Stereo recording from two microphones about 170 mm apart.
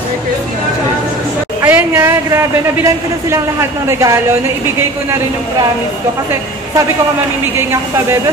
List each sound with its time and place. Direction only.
1.6 s a man's voice: 10° right (ahead or behind)
7.5 s a man's voice: 15° right (ahead or behind)